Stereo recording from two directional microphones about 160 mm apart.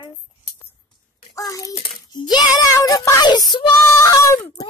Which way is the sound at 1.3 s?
20° left (ahead or behind).